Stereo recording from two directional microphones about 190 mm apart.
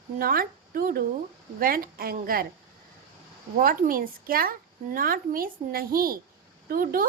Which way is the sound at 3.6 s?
50° right (ahead or behind).